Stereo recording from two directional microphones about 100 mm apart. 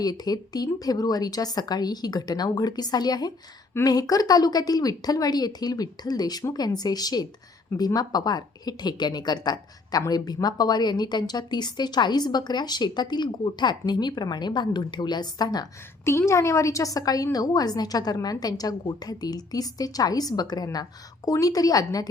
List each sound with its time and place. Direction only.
0.0 s a woman's voice: 40° left (ahead or behind)
16.0 s a woman's voice: 25° left (ahead or behind)